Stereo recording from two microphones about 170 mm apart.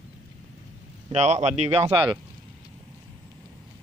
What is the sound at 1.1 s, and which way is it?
Speech, 40° right (ahead or behind).